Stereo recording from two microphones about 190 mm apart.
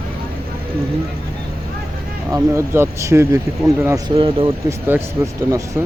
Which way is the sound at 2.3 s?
15° right (ahead or behind).